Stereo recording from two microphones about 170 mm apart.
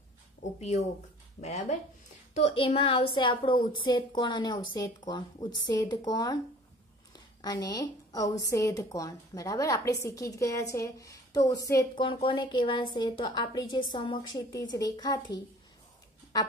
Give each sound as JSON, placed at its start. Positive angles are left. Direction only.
{"t": 0.4, "sound": "a woman's voice", "side_deg": 45}
{"t": 2.6, "sound": "a woman's voice", "side_deg": 35}
{"t": 7.4, "sound": "a woman's voice", "side_deg": 25}